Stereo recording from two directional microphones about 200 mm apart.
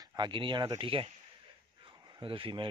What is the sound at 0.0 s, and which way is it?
Speech, 20° right (ahead or behind).